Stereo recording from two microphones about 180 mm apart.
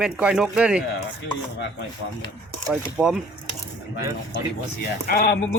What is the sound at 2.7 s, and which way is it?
Speech, 5° right (ahead or behind).